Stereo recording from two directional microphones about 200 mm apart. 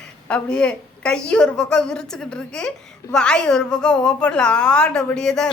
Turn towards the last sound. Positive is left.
turn(degrees=5)  # may be behind; listen again after turning